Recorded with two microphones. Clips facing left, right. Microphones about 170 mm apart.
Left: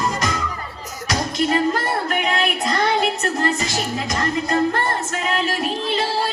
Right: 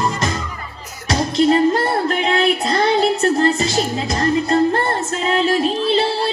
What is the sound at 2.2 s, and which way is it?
Music, 30° right (ahead or behind).